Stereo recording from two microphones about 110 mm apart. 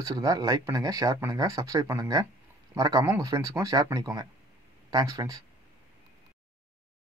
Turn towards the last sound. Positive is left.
turn(degrees=-30)  # may be behind; listen again after turning